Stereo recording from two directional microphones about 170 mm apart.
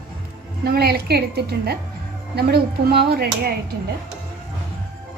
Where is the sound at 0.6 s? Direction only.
70° right (ahead or behind).